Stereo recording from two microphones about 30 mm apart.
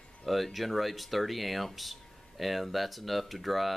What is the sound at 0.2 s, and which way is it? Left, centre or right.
Speech, centre.